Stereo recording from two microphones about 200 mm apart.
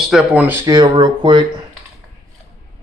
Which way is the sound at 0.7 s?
20° right (ahead or behind).